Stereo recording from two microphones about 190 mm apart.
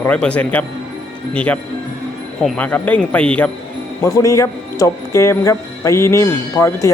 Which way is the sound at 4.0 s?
15° left (ahead or behind).